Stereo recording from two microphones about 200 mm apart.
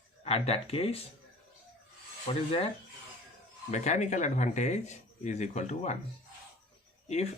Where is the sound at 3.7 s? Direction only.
35° left (ahead or behind).